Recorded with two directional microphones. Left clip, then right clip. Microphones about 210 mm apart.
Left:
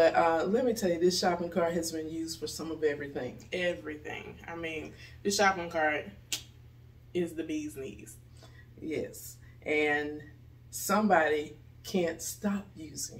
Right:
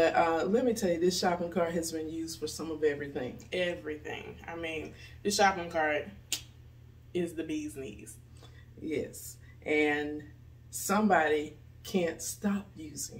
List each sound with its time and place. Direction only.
0.0 s speech: 5° left (ahead or behind)
3.3 s speech: 15° right (ahead or behind)
8.4 s a sound: 5° left (ahead or behind)
9.6 s speech: 5° left (ahead or behind)